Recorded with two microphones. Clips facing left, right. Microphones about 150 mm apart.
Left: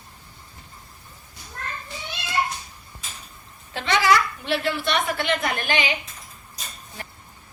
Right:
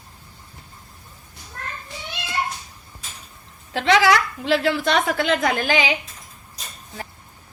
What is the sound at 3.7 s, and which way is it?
A woman's voice, 90° right.